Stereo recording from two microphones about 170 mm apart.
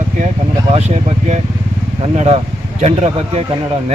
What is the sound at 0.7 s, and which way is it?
Speech, 40° right (ahead or behind).